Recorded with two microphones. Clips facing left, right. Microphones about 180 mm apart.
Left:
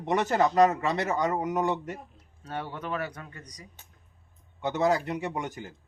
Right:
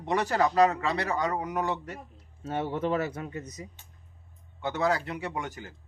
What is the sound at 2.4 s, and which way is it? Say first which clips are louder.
Speech: right 6 dB; 25° right (ahead or behind).